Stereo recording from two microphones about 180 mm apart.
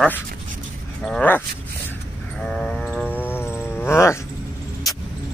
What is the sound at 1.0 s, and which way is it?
Speech, 10° left (ahead or behind).